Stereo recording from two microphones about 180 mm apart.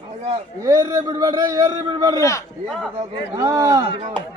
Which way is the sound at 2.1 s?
15° left (ahead or behind).